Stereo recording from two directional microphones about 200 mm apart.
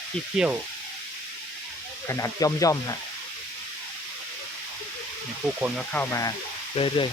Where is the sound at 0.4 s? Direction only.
5° right (ahead or behind).